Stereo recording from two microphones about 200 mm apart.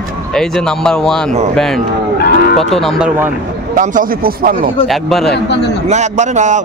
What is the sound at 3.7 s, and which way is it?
Speech, 40° right (ahead or behind).